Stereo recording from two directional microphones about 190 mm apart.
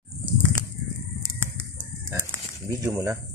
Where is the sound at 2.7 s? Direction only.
15° right (ahead or behind).